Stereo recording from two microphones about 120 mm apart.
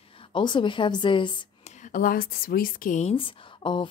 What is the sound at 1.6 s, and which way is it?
Whispering, 85° left.